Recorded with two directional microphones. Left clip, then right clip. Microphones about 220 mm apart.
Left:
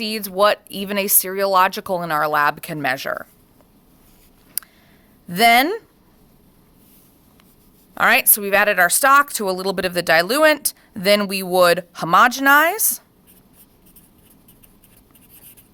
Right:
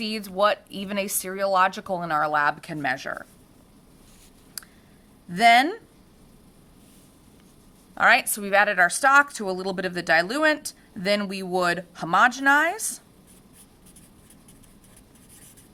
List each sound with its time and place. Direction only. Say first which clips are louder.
0.0 s a woman's voice: left 5 dB; 45° left (ahead or behind)
5.3 s a woman's voice: left 3 dB; 50° left (ahead or behind)
7.9 s a woman's voice: left 3 dB; 45° left (ahead or behind)